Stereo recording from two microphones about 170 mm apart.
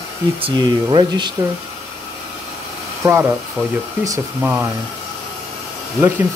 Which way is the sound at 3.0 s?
15° right (ahead or behind).